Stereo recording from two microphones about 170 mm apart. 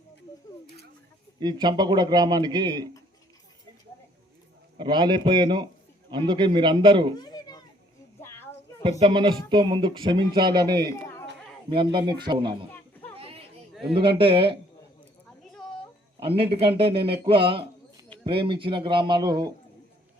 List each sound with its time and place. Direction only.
1.4 s speech: 25° right (ahead or behind)
4.8 s speech: 25° right (ahead or behind)
7.2 s children playing: 25° left (ahead or behind)
9.0 s speech: 30° right (ahead or behind)
10.8 s chatter: 15° left (ahead or behind)
11.7 s speech: 30° right (ahead or behind)
13.1 s a sound: 35° right (ahead or behind)
13.9 s speech: 30° right (ahead or behind)
16.2 s speech: 35° right (ahead or behind)